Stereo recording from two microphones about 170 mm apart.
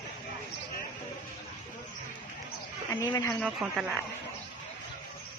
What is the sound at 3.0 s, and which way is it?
Speech, 15° left (ahead or behind).